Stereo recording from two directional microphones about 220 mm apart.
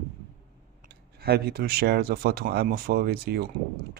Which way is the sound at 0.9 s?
45° right (ahead or behind).